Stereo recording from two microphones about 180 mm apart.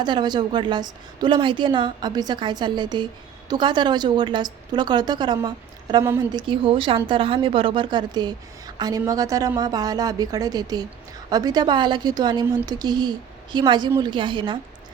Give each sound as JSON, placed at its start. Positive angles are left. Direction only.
{"t": 0.0, "sound": "a woman's voice", "side_deg": -25}